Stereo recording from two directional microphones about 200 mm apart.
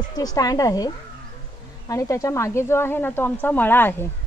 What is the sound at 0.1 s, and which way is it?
Speech, 20° left (ahead or behind).